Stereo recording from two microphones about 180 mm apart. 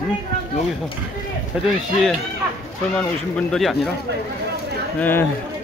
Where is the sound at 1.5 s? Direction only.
5° right (ahead or behind).